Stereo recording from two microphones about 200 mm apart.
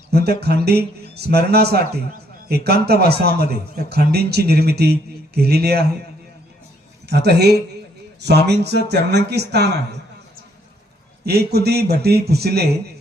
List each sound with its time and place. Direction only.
0.1 s a man's voice: 55° right (ahead or behind)
7.1 s speech: 55° right (ahead or behind)
11.3 s a man's voice: 55° right (ahead or behind)